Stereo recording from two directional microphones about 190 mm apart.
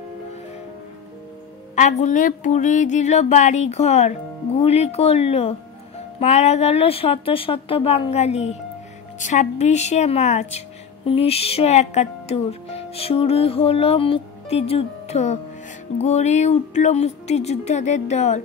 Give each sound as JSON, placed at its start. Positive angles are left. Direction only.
{"t": 1.8, "sound": "speech", "side_deg": 40}